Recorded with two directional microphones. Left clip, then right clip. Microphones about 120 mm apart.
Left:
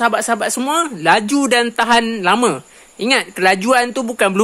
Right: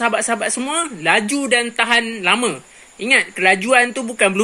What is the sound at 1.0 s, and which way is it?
Speech, 35° left (ahead or behind).